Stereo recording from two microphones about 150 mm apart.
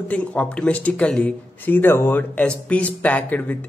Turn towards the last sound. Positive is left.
turn(degrees=10)  # may be behind; listen again after turning